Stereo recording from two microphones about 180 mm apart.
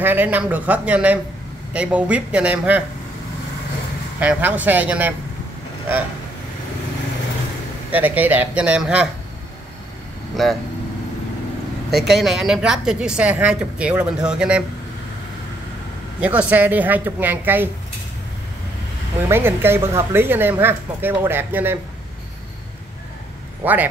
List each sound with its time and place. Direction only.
0.0 s speech: 10° right (ahead or behind)
4.2 s speech: 10° right (ahead or behind)
7.9 s speech: 10° right (ahead or behind)
10.3 s a woman's voice: centre (ahead or behind)
11.9 s a woman's voice: centre (ahead or behind)
16.2 s speech: 10° right (ahead or behind)
19.2 s speech: 15° right (ahead or behind)
23.6 s speech: 10° right (ahead or behind)